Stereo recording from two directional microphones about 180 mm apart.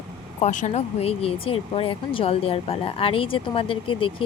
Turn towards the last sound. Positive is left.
turn(degrees=30)  # may be behind; listen again after turning